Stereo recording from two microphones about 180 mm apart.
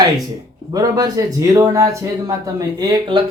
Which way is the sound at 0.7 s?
20° right (ahead or behind).